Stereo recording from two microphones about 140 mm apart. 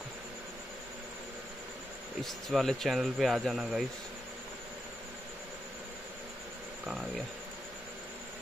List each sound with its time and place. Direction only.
2.2 s speech: centre (ahead or behind)
6.9 s speech: 5° right (ahead or behind)